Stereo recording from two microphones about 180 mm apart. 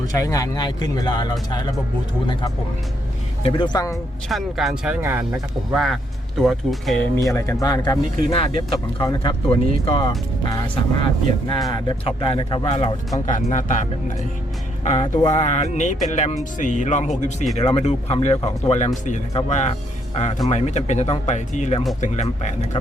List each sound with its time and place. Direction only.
0.1 s speech: 20° left (ahead or behind)
3.9 s speech: centre (ahead or behind)
5.7 s speech: centre (ahead or behind)
7.3 s a man's voice: 15° left (ahead or behind); by 13.7 s 45° left (ahead or behind)
15.0 s speech: 25° left (ahead or behind)
15.3 s speech: 40° left (ahead or behind)